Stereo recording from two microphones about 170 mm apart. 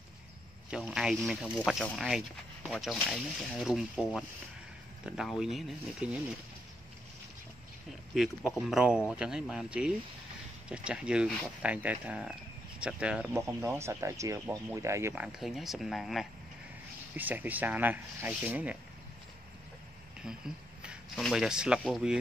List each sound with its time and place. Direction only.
0.7 s speech: 5° right (ahead or behind)
8.1 s speech: centre (ahead or behind)
15.2 s speech: centre (ahead or behind)
20.2 s speech: 5° right (ahead or behind)